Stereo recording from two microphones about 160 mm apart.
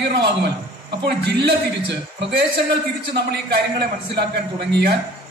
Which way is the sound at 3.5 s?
85° right.